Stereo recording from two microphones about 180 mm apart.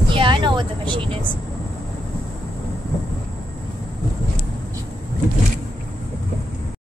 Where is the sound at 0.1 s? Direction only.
25° right (ahead or behind).